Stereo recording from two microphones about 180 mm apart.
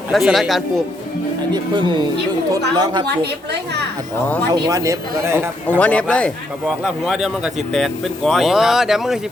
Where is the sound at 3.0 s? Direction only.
65° right (ahead or behind).